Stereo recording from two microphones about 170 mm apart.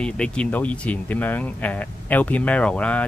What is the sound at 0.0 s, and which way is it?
Speech, 5° left (ahead or behind).